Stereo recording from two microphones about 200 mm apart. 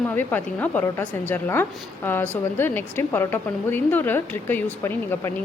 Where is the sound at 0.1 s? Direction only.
10° left (ahead or behind).